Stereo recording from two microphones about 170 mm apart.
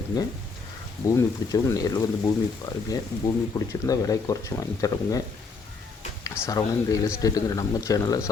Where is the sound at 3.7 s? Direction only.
20° left (ahead or behind).